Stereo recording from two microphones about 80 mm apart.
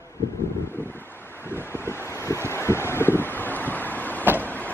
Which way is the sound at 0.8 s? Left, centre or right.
Left.